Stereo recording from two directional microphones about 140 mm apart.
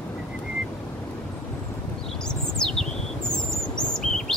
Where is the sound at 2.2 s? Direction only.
5° left (ahead or behind).